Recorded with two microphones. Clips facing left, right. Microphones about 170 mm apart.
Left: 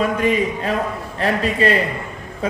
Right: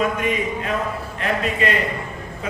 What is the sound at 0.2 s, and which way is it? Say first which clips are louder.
A man's voice: left 4 dB; 35° left (ahead or behind).